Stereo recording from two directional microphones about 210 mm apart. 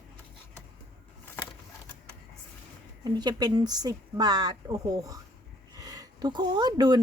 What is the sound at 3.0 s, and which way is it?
A woman's voice, 20° right (ahead or behind).